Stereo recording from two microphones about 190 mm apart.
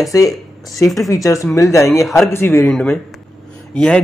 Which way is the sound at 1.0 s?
15° left (ahead or behind).